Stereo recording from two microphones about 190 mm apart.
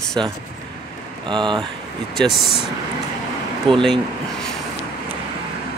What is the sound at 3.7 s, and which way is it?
Speech, centre (ahead or behind).